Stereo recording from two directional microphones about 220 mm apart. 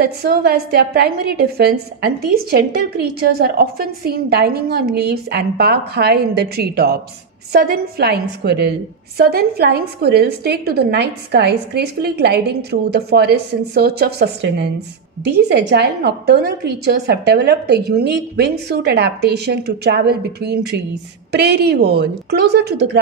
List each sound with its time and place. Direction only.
0.0 s a woman's voice: 45° right (ahead or behind)